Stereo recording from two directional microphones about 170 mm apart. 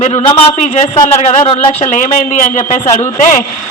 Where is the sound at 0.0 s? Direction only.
40° left (ahead or behind).